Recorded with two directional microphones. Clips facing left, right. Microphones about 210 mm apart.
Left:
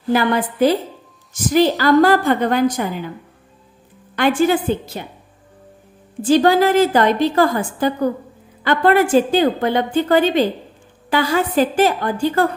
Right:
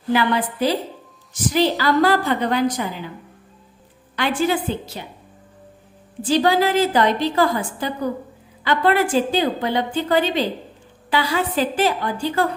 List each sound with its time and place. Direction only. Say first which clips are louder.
0.1 s a woman's voice: left 2 dB; 45° left (ahead or behind)
4.1 s a woman's voice: left 5 dB; 50° left (ahead or behind)
6.2 s a woman's voice: left 4 dB; 50° left (ahead or behind)